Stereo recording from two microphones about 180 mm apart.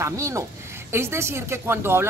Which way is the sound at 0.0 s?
15° right (ahead or behind).